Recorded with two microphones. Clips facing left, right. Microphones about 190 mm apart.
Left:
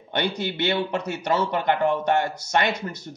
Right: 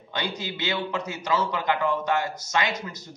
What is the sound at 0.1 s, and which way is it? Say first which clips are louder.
A man's voice: left 5 dB; 65° left (ahead or behind).